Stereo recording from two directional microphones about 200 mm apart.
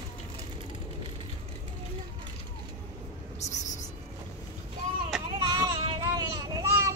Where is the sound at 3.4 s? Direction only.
35° left (ahead or behind).